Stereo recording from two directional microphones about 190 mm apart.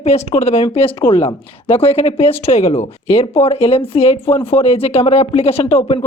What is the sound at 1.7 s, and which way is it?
Speech, 30° left (ahead or behind).